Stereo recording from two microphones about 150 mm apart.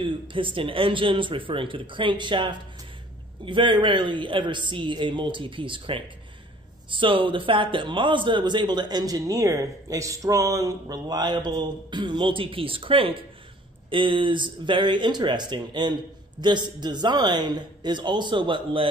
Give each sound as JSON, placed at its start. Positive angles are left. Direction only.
{"t": 0.0, "sound": "a man's voice", "side_deg": -35}